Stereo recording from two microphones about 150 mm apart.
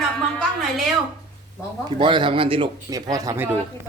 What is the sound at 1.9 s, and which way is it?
Speech, 30° right (ahead or behind).